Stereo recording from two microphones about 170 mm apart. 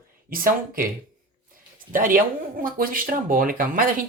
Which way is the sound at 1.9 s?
55° right (ahead or behind).